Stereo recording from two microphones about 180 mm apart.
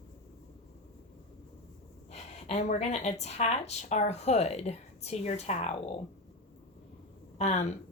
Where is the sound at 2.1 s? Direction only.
35° left (ahead or behind).